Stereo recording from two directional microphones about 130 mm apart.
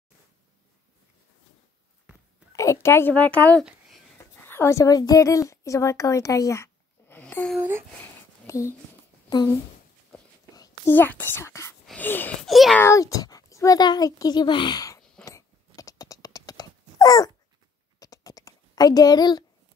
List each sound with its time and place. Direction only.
2.5 s a woman's voice: 25° left (ahead or behind)
8.5 s speech: 25° left (ahead or behind)
10.9 s speech: 15° left (ahead or behind)
11.8 s a sound: 10° left (ahead or behind)
12.4 s a child's voice: centre (ahead or behind)
12.7 s speech: 20° left (ahead or behind)
15.2 s dog: 25° left (ahead or behind)
17.9 s a sound: 30° left (ahead or behind)